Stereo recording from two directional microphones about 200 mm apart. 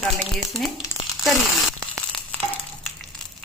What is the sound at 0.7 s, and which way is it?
Crumpling, 25° left (ahead or behind).